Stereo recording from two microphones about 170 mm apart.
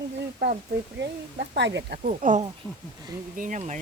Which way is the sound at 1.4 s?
90° right.